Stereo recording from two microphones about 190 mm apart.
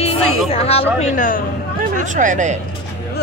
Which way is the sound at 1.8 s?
40° right (ahead or behind).